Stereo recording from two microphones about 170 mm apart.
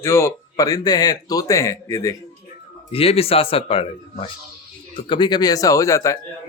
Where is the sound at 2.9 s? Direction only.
35° left (ahead or behind); by 6.2 s 20° left (ahead or behind).